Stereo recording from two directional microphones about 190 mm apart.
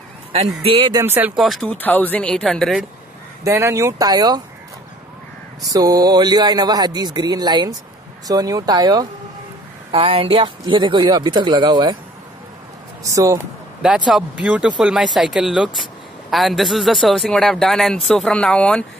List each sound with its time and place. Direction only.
0.6 s speech: 30° right (ahead or behind)
0.9 s speech: 15° right (ahead or behind)
1.3 s a man's voice: centre (ahead or behind)
3.4 s speech: 15° right (ahead or behind)
5.6 s speech: 20° right (ahead or behind)
13.0 s speech: 15° right (ahead or behind)
13.8 s a man's voice: 5° right (ahead or behind)